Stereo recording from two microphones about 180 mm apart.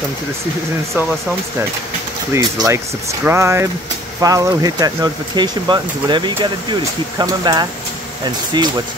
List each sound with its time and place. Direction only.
2.3 s speech: 15° right (ahead or behind)